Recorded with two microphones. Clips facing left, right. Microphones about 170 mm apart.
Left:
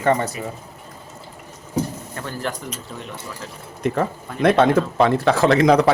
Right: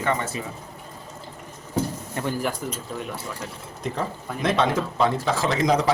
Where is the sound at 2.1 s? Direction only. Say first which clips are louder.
Right 3 dB; 10° right (ahead or behind).